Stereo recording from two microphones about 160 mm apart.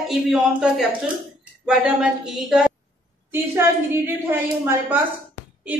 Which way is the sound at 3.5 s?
15° right (ahead or behind).